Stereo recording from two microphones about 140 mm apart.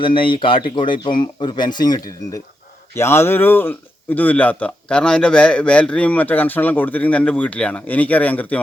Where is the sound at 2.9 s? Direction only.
20° left (ahead or behind).